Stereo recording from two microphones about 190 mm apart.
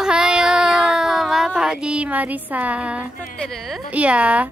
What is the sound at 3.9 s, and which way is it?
Speech, 5° right (ahead or behind).